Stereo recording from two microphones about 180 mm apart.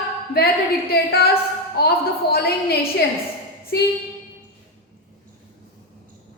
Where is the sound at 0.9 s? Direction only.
60° left (ahead or behind).